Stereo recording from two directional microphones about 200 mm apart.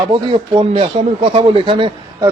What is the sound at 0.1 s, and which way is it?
Speech, 25° right (ahead or behind).